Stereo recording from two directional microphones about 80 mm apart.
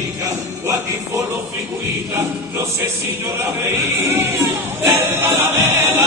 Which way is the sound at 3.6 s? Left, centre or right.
Right.